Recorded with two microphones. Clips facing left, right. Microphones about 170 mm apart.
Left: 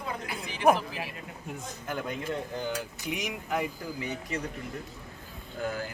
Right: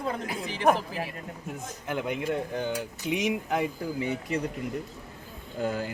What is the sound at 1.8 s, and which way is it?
Cutlery, 15° right (ahead or behind).